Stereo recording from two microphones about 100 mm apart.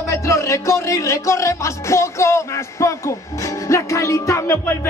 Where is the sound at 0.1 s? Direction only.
30° left (ahead or behind).